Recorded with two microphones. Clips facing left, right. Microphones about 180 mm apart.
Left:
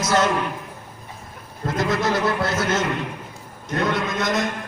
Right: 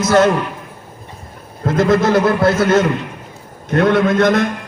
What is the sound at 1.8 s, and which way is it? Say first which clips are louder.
A man's voice: right 9 dB; 50° right (ahead or behind).